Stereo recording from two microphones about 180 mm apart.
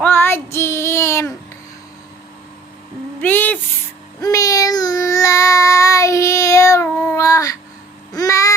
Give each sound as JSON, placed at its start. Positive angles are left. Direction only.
{"t": 0.0, "sound": "child singing", "side_deg": 10}
{"t": 3.2, "sound": "speech", "side_deg": 10}
{"t": 4.2, "sound": "child singing", "side_deg": 20}
{"t": 8.1, "sound": "babbling", "side_deg": 20}